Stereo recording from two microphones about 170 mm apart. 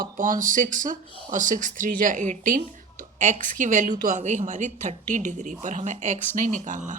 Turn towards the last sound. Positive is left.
turn(degrees=-45)  # may be behind; listen again after turning